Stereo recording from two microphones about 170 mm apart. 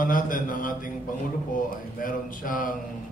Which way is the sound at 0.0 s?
50° left (ahead or behind).